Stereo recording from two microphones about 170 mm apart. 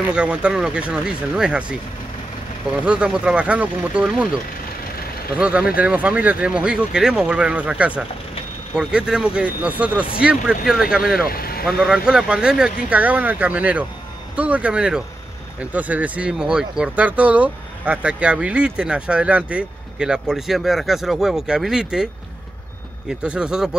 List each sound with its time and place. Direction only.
0.1 s speech: 5° right (ahead or behind)
2.8 s speech: 5° right (ahead or behind)
5.4 s speech: 5° right (ahead or behind)
11.2 s speech: 60° left (ahead or behind)
11.6 s speech: 5° right (ahead or behind)